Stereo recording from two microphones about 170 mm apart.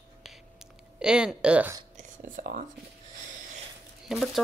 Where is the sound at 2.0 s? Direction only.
55° right (ahead or behind).